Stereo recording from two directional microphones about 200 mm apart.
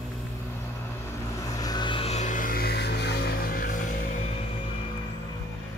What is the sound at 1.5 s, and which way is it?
Vehicle, 20° left (ahead or behind).